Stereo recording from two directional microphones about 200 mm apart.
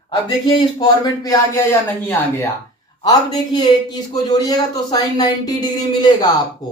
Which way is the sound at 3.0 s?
20° left (ahead or behind).